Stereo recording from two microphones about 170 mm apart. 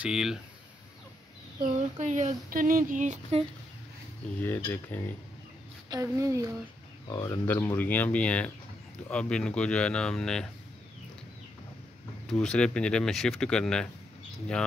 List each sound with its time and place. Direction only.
0.0 s speech: 5° right (ahead or behind)
1.6 s a sound: 45° right (ahead or behind)
4.4 s speech: 10° left (ahead or behind)
5.9 s a woman's voice: 20° right (ahead or behind)
7.1 s speech: 25° left (ahead or behind)
7.4 s speech: 10° left (ahead or behind)
12.3 s speech: 5° left (ahead or behind)